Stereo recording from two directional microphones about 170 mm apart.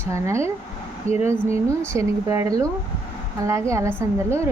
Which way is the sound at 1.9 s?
20° right (ahead or behind).